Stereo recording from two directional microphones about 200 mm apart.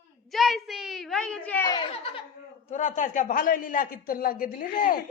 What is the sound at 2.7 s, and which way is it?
Speech, 40° left (ahead or behind).